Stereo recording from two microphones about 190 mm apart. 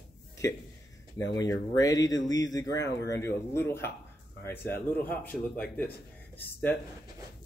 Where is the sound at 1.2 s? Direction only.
20° left (ahead or behind).